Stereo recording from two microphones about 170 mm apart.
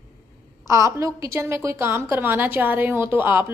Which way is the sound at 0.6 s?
15° right (ahead or behind).